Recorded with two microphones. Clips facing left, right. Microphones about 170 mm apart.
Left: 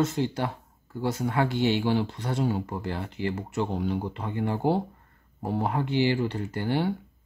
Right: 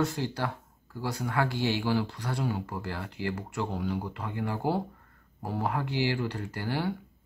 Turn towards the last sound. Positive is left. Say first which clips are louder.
# left 5 dB
turn(degrees=20)  # may be behind; listen again after turning